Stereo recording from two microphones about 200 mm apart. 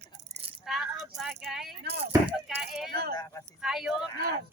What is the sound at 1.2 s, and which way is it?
Vehicle, centre (ahead or behind).